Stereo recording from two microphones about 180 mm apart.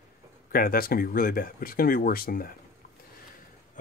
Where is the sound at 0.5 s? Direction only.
55° left (ahead or behind).